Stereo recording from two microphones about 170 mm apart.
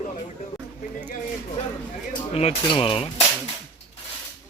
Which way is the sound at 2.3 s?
35° left (ahead or behind).